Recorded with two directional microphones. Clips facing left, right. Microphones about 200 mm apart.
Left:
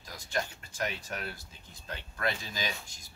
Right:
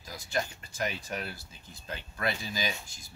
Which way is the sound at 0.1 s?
Centre (ahead or behind).